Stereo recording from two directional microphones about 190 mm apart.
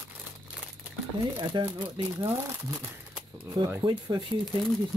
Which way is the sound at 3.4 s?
20° right (ahead or behind).